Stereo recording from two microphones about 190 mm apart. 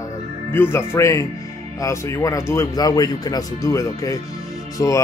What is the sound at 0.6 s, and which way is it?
Speech, 15° left (ahead or behind).